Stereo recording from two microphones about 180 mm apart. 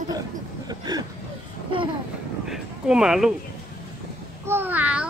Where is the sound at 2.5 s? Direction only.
5° right (ahead or behind).